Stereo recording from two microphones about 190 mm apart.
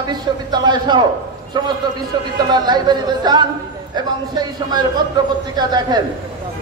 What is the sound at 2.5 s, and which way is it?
A woman's voice, 20° right (ahead or behind).